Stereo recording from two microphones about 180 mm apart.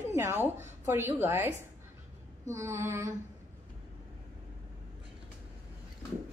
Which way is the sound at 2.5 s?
15° right (ahead or behind).